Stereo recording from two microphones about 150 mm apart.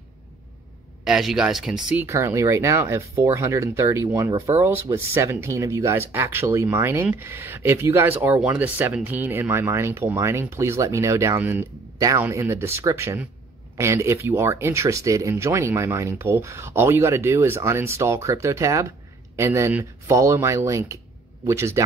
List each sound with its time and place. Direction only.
1.0 s speech: 5° right (ahead or behind)
2.0 s speech: 20° right (ahead or behind)